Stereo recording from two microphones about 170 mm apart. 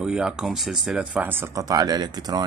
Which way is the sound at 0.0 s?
5° right (ahead or behind).